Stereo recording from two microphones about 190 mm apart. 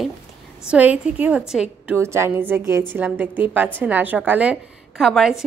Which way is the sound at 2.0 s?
15° right (ahead or behind).